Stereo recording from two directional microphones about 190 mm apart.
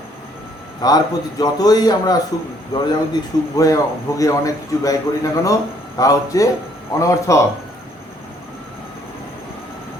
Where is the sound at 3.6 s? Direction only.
15° left (ahead or behind).